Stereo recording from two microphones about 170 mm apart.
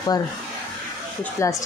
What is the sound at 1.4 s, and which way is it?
Speech, 15° left (ahead or behind).